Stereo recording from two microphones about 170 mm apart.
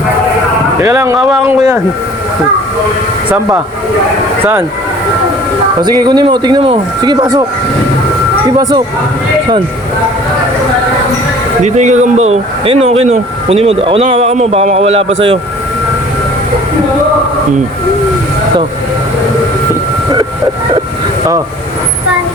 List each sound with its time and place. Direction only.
0.8 s speech: 15° right (ahead or behind)
3.2 s speech: 10° right (ahead or behind)
5.8 s speech: 25° right (ahead or behind)
11.6 s speech: 45° right (ahead or behind)